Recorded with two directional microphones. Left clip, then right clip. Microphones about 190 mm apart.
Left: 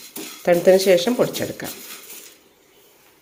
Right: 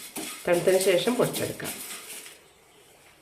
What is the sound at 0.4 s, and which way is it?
Speech, 45° left (ahead or behind).